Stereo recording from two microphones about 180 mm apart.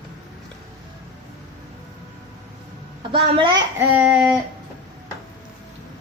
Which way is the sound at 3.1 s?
30° right (ahead or behind).